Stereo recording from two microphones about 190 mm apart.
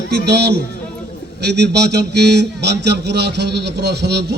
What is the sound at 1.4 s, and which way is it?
A man's voice, 60° right (ahead or behind).